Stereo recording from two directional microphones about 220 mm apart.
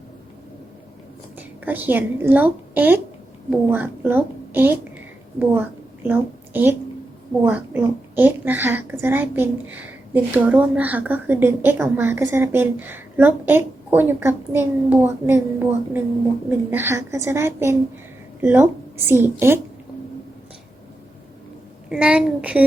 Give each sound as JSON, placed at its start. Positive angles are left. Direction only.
{"t": 1.4, "sound": "a woman's voice", "side_deg": -10}
{"t": 21.8, "sound": "a woman's voice", "side_deg": -5}